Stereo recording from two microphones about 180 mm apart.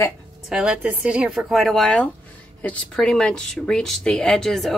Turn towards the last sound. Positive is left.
turn(degrees=0)  # may be behind; listen again after turning